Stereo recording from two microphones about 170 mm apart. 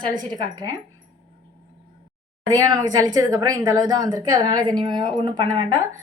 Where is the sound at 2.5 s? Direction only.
20° right (ahead or behind).